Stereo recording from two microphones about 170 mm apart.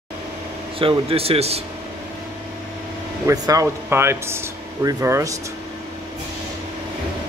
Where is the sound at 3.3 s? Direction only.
20° right (ahead or behind).